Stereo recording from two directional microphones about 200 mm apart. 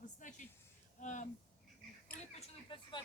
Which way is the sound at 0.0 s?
40° left (ahead or behind).